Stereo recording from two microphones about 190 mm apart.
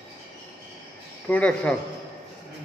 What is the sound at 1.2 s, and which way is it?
Speech, 5° left (ahead or behind).